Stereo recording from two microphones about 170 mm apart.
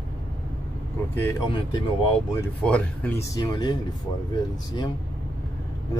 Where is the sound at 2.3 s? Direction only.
10° left (ahead or behind).